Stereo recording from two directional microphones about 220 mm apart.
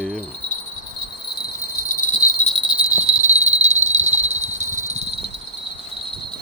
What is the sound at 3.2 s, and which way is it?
Cricket, 30° right (ahead or behind).